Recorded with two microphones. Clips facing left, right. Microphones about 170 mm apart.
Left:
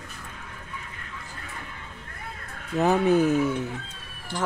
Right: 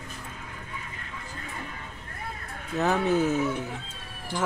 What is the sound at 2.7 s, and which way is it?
Fowl, 15° left (ahead or behind).